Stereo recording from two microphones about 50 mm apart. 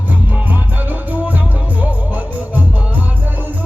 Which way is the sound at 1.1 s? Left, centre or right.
Right.